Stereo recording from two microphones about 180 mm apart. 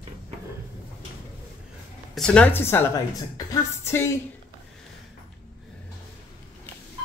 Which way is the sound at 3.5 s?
15° left (ahead or behind).